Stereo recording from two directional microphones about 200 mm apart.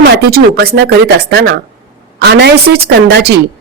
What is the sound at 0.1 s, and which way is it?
Speech, 50° right (ahead or behind).